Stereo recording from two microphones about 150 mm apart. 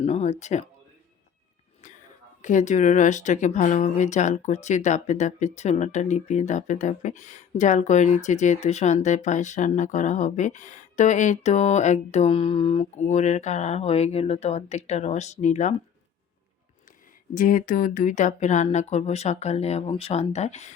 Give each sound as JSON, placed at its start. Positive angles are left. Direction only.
{"t": 0.0, "sound": "speech", "side_deg": 45}
{"t": 2.4, "sound": "speech", "side_deg": 55}
{"t": 13.1, "sound": "speech", "side_deg": 50}
{"t": 17.3, "sound": "speech", "side_deg": 60}